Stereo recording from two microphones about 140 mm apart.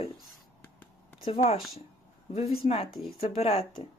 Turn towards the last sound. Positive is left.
turn(degrees=45)  # may be behind; listen again after turning